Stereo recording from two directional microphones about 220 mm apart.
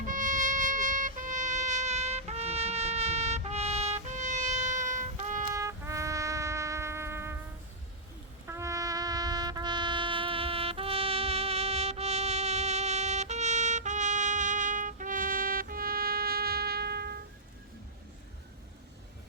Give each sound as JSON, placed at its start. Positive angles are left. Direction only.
{"t": 0.1, "sound": "music", "side_deg": -35}
{"t": 5.5, "sound": "shofar", "side_deg": -15}
{"t": 8.4, "sound": "music", "side_deg": -15}